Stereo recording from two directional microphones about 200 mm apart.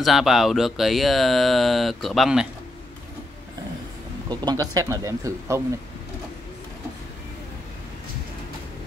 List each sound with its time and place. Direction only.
0.0 s speech: centre (ahead or behind)
4.3 s speech: 20° right (ahead or behind)